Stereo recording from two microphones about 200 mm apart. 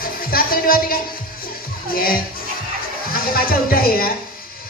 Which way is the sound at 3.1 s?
45° left (ahead or behind).